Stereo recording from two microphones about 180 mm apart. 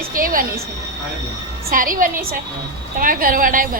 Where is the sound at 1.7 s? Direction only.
50° right (ahead or behind).